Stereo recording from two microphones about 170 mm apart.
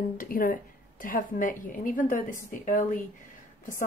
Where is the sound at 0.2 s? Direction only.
55° left (ahead or behind).